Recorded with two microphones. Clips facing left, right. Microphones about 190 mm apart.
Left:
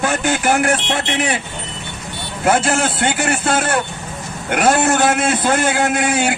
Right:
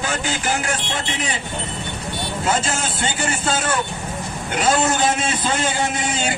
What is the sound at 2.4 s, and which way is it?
A man's voice, 60° left (ahead or behind).